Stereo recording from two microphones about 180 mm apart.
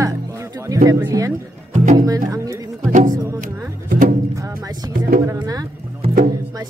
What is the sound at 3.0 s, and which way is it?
Speech, 20° right (ahead or behind).